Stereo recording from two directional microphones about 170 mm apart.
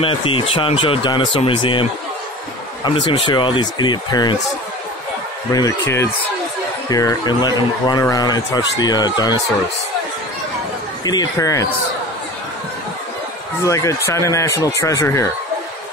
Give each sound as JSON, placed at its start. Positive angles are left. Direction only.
{"t": 0.0, "sound": "speech", "side_deg": 30}
{"t": 3.3, "sound": "speech", "side_deg": 30}
{"t": 5.5, "sound": "speech", "side_deg": 20}
{"t": 11.1, "sound": "speech", "side_deg": 20}
{"t": 13.7, "sound": "speech", "side_deg": 20}